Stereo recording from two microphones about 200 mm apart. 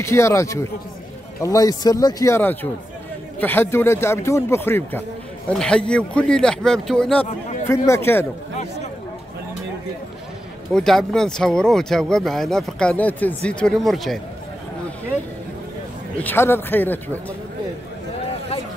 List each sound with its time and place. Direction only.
0.0 s a man's voice: 15° left (ahead or behind)
10.7 s speech: centre (ahead or behind)
16.2 s a man's voice: 10° left (ahead or behind)